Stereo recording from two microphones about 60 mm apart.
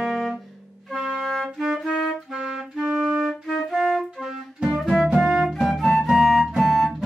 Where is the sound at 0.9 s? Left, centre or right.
Centre.